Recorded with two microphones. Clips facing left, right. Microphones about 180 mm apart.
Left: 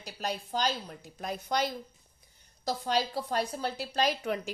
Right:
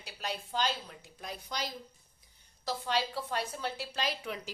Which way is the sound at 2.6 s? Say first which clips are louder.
Left 3 dB; 40° left (ahead or behind).